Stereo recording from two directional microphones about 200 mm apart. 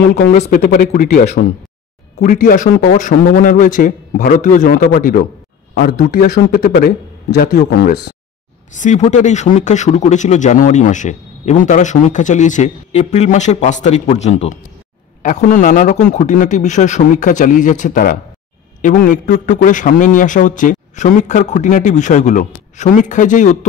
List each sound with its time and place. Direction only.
0.1 s a man's voice: 50° left (ahead or behind)
0.4 s a man's voice: 40° left (ahead or behind)
8.7 s speech: 35° left (ahead or behind)